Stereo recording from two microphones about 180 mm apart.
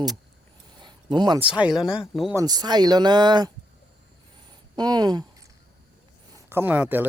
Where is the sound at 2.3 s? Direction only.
20° right (ahead or behind).